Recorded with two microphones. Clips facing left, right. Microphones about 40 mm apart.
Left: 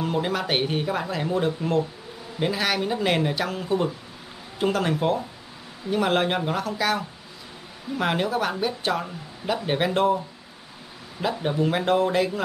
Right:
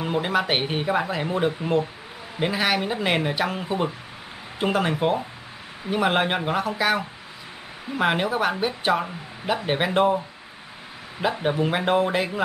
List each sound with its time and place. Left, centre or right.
0.0 s a woman's voice: centre